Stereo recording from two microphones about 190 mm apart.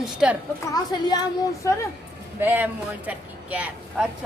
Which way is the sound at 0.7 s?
20° left (ahead or behind).